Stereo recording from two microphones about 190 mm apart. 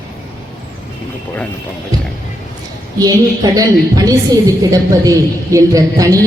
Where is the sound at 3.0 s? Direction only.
20° right (ahead or behind).